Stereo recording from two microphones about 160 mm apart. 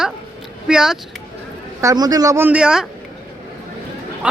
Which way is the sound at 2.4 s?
5° right (ahead or behind).